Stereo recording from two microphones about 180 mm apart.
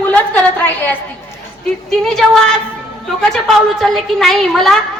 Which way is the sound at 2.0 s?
Centre (ahead or behind).